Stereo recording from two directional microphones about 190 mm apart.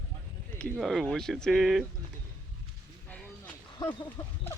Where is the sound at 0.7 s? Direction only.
Centre (ahead or behind).